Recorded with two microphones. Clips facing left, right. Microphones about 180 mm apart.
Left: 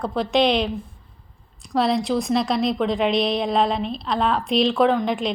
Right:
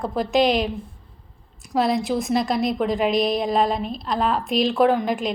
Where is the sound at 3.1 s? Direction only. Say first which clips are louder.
Right 1 dB; 45° right (ahead or behind).